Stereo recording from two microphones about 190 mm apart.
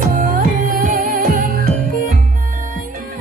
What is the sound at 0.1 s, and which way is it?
Music, 45° right (ahead or behind).